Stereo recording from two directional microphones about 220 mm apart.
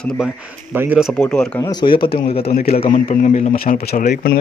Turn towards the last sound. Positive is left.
turn(degrees=40)  # may be behind; listen again after turning